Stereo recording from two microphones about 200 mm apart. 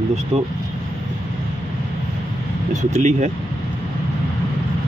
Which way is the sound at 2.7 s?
35° right (ahead or behind).